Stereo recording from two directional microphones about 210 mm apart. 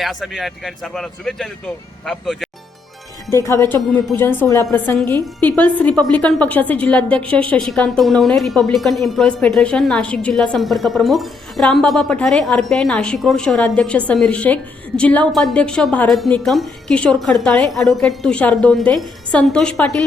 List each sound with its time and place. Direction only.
0.0 s speech: centre (ahead or behind)
3.3 s speech: 15° left (ahead or behind)